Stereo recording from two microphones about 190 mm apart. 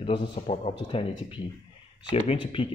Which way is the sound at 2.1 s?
30° left (ahead or behind).